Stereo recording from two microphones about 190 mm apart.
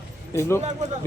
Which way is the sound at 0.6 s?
35° right (ahead or behind).